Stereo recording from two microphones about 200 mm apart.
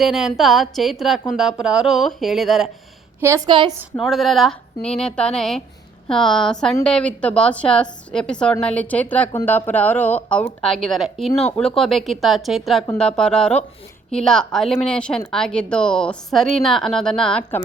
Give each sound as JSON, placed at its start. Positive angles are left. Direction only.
{"t": 0.0, "sound": "speech", "side_deg": 0}
{"t": 3.2, "sound": "a woman's voice", "side_deg": -15}
{"t": 3.9, "sound": "a woman's voice", "side_deg": 0}